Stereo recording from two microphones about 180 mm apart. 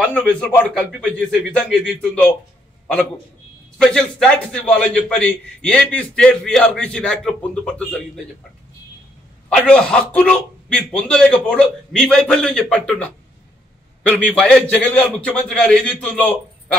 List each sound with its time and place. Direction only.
0.1 s a man's voice: 5° left (ahead or behind)
3.7 s a man's voice: 5° left (ahead or behind)
9.5 s a man's voice: 5° left (ahead or behind)